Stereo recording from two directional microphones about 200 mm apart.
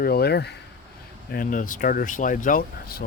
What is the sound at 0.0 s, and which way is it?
Speech, 50° left (ahead or behind).